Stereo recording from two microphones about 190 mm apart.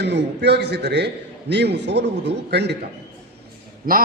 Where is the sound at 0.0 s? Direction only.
60° right (ahead or behind).